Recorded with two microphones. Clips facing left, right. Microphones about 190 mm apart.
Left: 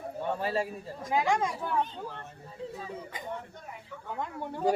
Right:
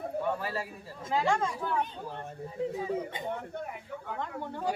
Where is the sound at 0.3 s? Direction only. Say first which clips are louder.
Left 5 dB; 25° left (ahead or behind).